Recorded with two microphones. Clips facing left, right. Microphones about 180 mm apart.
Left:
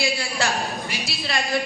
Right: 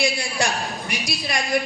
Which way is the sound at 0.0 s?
15° right (ahead or behind).